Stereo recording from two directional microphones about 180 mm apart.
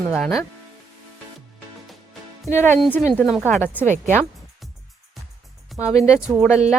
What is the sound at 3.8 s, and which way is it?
Speech, 40° right (ahead or behind).